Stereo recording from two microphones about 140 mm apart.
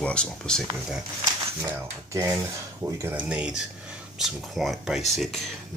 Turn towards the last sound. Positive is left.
turn(degrees=0)  # may be behind; listen again after turning